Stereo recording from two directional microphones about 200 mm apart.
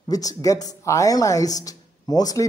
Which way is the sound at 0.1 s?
20° left (ahead or behind).